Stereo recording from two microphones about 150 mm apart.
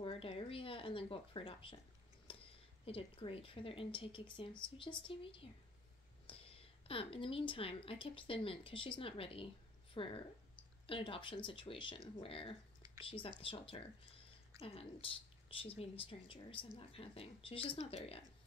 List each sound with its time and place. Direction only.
0.0 s speech: 40° left (ahead or behind)
2.3 s a sound: 35° left (ahead or behind)
2.8 s a woman's voice: 40° left (ahead or behind)